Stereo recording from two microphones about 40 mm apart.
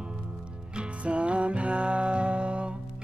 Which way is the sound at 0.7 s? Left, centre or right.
Right.